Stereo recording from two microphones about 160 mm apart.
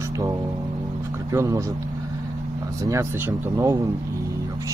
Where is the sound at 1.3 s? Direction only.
20° right (ahead or behind).